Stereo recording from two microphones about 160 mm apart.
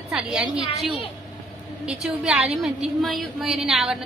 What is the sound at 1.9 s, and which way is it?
A woman's voice, 5° right (ahead or behind).